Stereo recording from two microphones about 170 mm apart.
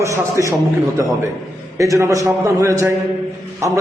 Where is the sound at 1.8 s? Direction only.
20° right (ahead or behind).